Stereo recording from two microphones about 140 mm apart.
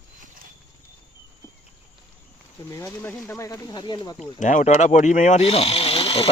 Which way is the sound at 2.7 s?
20° left (ahead or behind).